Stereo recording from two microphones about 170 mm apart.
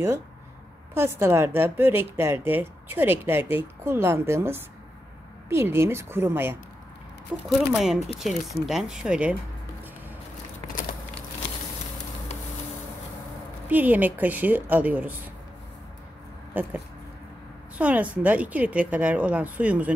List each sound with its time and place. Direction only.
0.9 s a woman's voice: 15° right (ahead or behind)
13.7 s a woman's voice: 10° right (ahead or behind)
16.5 s a woman's voice: 10° right (ahead or behind)
17.7 s a woman's voice: 10° right (ahead or behind)